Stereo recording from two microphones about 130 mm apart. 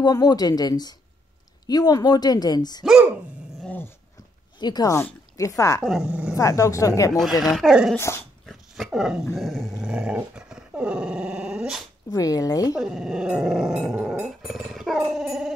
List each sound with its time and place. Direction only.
0.0 s speech: 30° left (ahead or behind)
2.8 s a sound: 5° right (ahead or behind)
3.6 s dog: 15° left (ahead or behind)
4.6 s speech: 30° left (ahead or behind)
5.9 s speech: 5° right (ahead or behind)
6.3 s speech: 25° left (ahead or behind)
7.2 s speech: centre (ahead or behind)
8.5 s dog: centre (ahead or behind)
12.1 s speech: 25° left (ahead or behind)
12.7 s speech: 5° right (ahead or behind)